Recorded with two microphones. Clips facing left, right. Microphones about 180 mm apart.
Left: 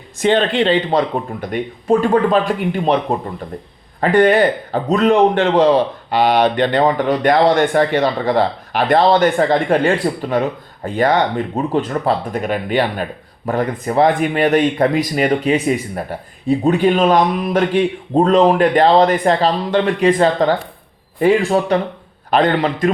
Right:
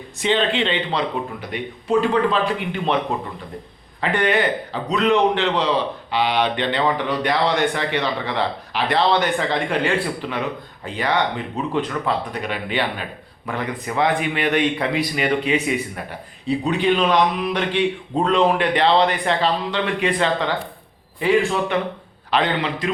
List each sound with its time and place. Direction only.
0.2 s speech: 45° left (ahead or behind)
4.0 s speech: 45° left (ahead or behind)